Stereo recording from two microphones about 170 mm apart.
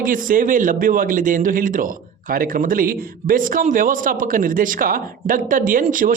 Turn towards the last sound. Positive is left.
turn(degrees=-50)  # may be behind; listen again after turning